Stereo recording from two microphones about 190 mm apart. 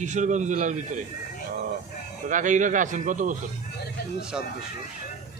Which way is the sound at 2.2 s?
40° right (ahead or behind).